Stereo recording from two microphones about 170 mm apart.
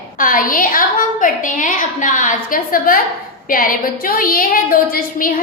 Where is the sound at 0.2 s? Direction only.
55° left (ahead or behind).